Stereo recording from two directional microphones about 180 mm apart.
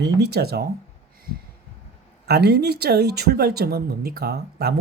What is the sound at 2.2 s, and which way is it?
Speech, 60° right (ahead or behind).